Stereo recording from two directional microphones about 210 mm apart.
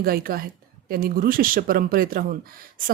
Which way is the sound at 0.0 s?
45° right (ahead or behind).